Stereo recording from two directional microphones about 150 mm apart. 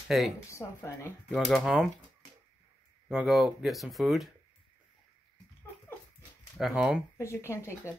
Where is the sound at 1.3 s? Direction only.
Centre (ahead or behind).